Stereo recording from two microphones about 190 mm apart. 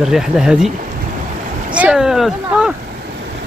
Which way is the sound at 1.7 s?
5° right (ahead or behind).